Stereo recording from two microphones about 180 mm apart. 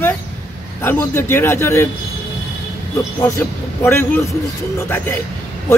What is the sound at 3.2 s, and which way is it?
A man's voice, 10° left (ahead or behind).